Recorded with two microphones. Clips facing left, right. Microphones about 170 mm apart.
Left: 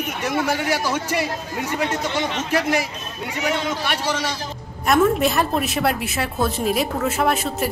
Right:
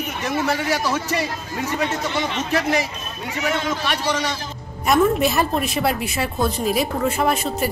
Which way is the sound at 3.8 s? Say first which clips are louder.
Right 1 dB; 5° left (ahead or behind).